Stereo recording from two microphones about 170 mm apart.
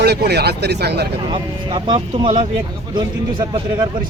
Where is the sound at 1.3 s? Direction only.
30° right (ahead or behind).